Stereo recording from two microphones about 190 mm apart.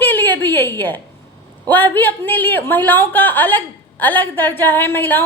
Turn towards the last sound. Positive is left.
turn(degrees=10)  # may be behind; listen again after turning